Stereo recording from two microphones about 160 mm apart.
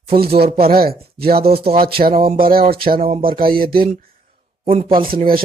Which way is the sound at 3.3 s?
35° right (ahead or behind).